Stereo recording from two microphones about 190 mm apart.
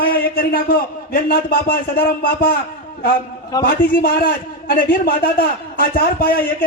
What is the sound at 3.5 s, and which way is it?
Speech, 20° left (ahead or behind).